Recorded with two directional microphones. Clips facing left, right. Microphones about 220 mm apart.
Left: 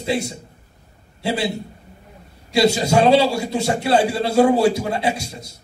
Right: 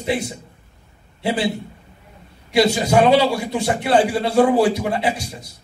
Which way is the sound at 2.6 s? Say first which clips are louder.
Left 1 dB; 25° left (ahead or behind).